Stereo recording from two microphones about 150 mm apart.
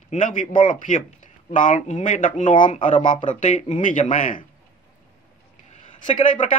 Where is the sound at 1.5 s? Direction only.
60° left (ahead or behind).